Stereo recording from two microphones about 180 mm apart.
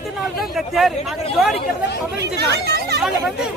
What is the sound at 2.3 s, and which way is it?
Speech, 65° right (ahead or behind).